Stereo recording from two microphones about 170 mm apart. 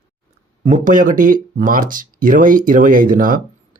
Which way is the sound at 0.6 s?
45° right (ahead or behind).